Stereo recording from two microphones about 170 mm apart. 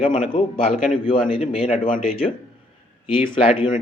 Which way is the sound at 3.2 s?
30° left (ahead or behind).